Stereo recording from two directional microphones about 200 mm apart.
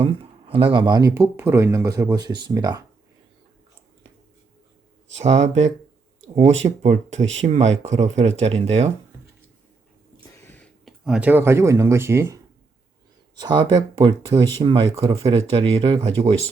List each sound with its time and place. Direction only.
0.0 s speech: 30° right (ahead or behind)
5.1 s speech: 35° right (ahead or behind)
10.4 s speech: 5° left (ahead or behind); by 12.4 s 15° right (ahead or behind)
13.4 s speech: 20° right (ahead or behind)